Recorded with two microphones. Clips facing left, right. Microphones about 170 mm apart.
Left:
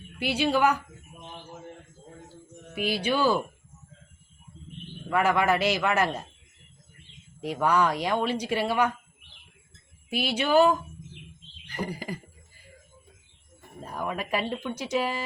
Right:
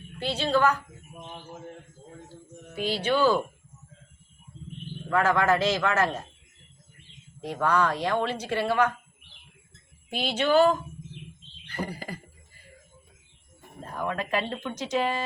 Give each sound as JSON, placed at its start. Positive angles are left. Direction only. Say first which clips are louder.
{"t": 0.2, "sound": "speech", "louder": "left 1 dB", "side_deg": 10}
{"t": 2.3, "sound": "speech", "louder": "left 1 dB", "side_deg": 10}
{"t": 5.0, "sound": "speech", "louder": "even", "side_deg": 15}
{"t": 7.4, "sound": "speech", "louder": "left 1 dB", "side_deg": 10}
{"t": 10.1, "sound": "speech", "louder": "right 1 dB", "side_deg": 10}
{"t": 11.6, "sound": "a sound", "louder": "left 1 dB", "side_deg": 15}
{"t": 13.9, "sound": "speech", "louder": "right 1 dB", "side_deg": 10}